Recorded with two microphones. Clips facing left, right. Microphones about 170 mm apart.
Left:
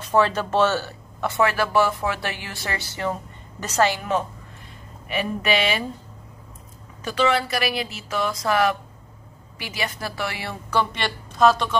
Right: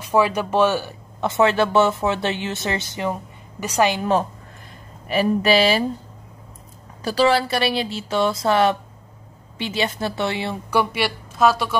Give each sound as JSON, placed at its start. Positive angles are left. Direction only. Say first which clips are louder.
{"t": 0.0, "sound": "speech", "louder": "right 1 dB", "side_deg": -10}
{"t": 5.0, "sound": "speech", "louder": "right 7 dB", "side_deg": -35}
{"t": 7.0, "sound": "speech", "louder": "right 4 dB", "side_deg": -35}